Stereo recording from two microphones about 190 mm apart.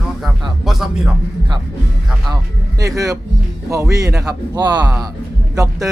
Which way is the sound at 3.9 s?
15° right (ahead or behind).